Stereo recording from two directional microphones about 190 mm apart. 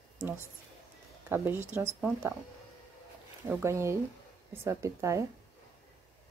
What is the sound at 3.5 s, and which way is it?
Speech, 15° right (ahead or behind).